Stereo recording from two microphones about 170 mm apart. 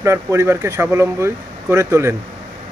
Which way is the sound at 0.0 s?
15° right (ahead or behind).